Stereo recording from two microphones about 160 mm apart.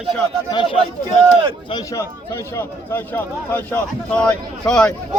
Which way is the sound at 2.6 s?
15° left (ahead or behind).